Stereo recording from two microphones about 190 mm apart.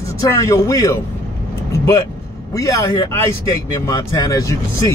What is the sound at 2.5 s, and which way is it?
Speech, 15° left (ahead or behind).